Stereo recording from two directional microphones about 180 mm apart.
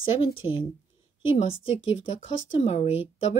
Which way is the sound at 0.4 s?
30° left (ahead or behind).